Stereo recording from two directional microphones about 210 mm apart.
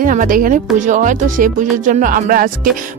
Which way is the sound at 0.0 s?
40° right (ahead or behind).